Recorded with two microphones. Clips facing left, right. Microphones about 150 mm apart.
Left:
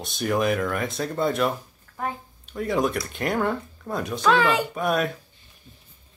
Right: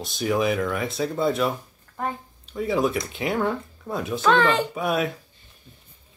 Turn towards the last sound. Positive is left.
turn(degrees=-5)  # may be behind; listen again after turning